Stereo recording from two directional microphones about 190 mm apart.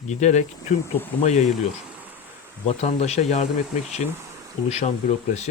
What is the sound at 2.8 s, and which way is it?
Speech, 35° left (ahead or behind).